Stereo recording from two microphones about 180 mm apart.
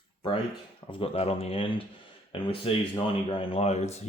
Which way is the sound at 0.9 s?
30° left (ahead or behind).